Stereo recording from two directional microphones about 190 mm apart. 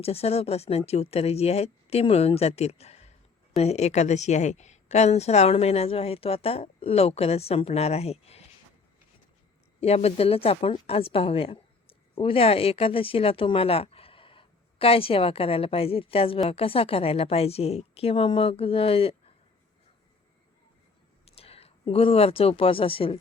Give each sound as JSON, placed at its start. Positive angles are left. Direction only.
{"t": 0.0, "sound": "a woman's voice", "side_deg": 30}
{"t": 9.8, "sound": "a woman's voice", "side_deg": 35}
{"t": 21.2, "sound": "speech", "side_deg": 30}